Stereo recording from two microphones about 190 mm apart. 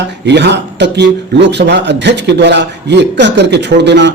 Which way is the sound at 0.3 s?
65° right (ahead or behind).